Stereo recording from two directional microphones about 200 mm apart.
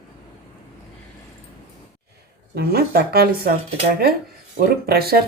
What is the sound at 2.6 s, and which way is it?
Speech, 50° right (ahead or behind).